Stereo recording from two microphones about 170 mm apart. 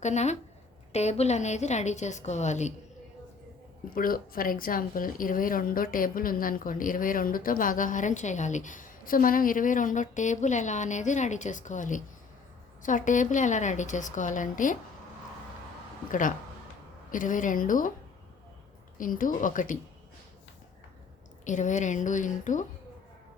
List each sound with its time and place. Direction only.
0.0 s a woman's voice: 40° left (ahead or behind)
3.8 s a woman's voice: 60° left (ahead or behind)
17.1 s a woman's voice: 50° left (ahead or behind)
18.9 s a woman's voice: 50° left (ahead or behind)
21.4 s a woman's voice: 45° left (ahead or behind)